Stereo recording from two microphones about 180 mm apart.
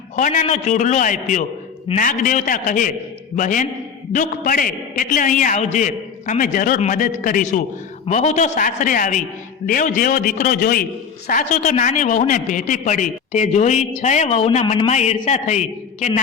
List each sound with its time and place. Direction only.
0.2 s a man's voice: 40° left (ahead or behind)